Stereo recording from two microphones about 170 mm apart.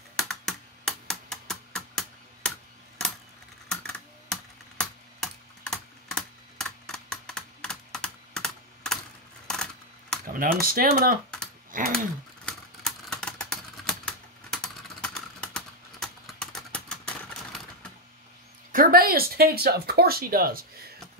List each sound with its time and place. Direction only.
0.1 s typing: 5° left (ahead or behind)
3.8 s typing: 5° left (ahead or behind)
10.2 s speech: 55° right (ahead or behind)
11.7 s a sound: 50° right (ahead or behind)
12.4 s typing: 5° left (ahead or behind)
18.7 s speech: 60° right (ahead or behind)